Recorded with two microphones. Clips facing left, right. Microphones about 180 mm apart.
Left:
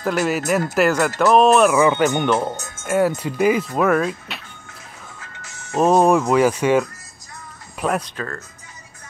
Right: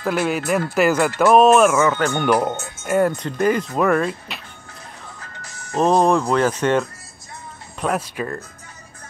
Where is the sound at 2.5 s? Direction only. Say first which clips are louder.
Right 2 dB; 45° left (ahead or behind).